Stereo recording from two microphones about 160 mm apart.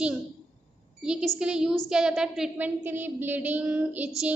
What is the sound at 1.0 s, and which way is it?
A woman's voice, 5° right (ahead or behind).